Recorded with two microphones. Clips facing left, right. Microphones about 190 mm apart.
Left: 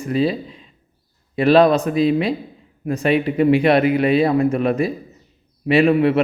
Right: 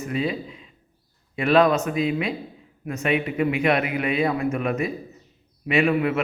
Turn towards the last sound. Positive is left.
turn(degrees=30)  # may be behind; listen again after turning